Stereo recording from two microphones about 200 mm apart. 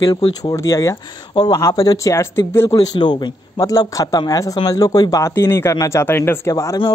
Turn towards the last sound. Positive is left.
turn(degrees=15)  # may be behind; listen again after turning